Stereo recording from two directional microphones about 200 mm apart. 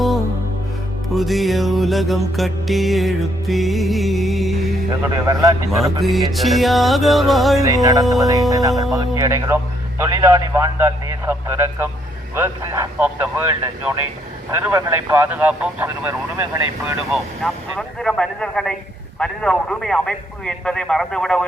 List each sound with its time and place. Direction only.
1.1 s music: centre (ahead or behind)
5.0 s speech: 15° right (ahead or behind)
6.0 s music: centre (ahead or behind)
7.6 s a man's voice: 15° right (ahead or behind)
14.6 s speech: 10° right (ahead or behind)
17.1 s music: centre (ahead or behind)